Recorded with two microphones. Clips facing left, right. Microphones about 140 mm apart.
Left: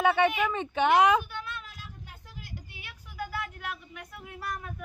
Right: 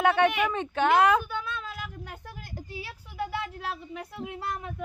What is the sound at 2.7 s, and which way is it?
Speech, 30° right (ahead or behind).